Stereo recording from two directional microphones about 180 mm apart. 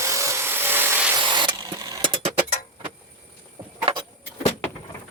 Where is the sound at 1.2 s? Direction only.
25° right (ahead or behind).